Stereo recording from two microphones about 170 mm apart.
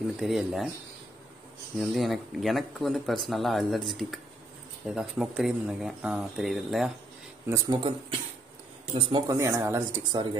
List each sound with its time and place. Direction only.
0.2 s speech: 5° right (ahead or behind)
1.8 s speech: centre (ahead or behind)
7.4 s speech: 20° right (ahead or behind)
9.3 s speech: 15° right (ahead or behind)